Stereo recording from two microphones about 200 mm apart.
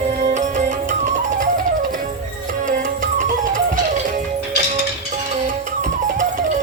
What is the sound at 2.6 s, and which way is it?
Music, 40° right (ahead or behind).